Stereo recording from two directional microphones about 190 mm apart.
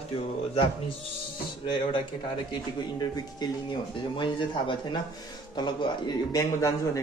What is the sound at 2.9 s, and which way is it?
Speech, 20° left (ahead or behind).